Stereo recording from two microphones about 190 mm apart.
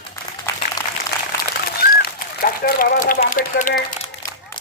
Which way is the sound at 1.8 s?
55° left (ahead or behind).